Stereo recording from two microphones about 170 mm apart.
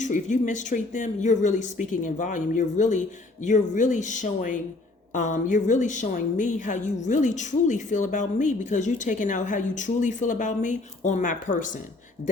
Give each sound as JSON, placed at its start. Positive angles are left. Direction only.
{"t": 0.0, "sound": "a woman's voice", "side_deg": 45}